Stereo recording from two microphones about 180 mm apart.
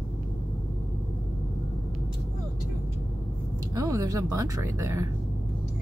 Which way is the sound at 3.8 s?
15° right (ahead or behind).